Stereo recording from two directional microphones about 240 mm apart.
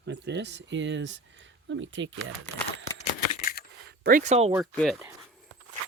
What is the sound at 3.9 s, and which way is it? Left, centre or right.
Speech, right.